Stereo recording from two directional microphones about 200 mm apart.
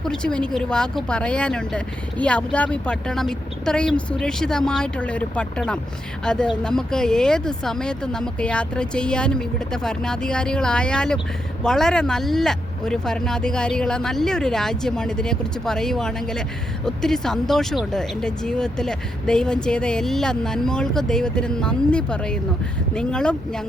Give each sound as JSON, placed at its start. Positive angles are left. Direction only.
{"t": 0.0, "sound": "speech", "side_deg": 5}